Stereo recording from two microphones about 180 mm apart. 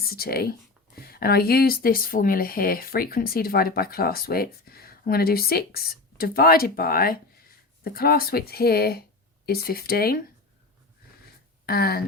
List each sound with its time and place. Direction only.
0.0 s speech: 55° left (ahead or behind)
11.6 s speech: 60° left (ahead or behind)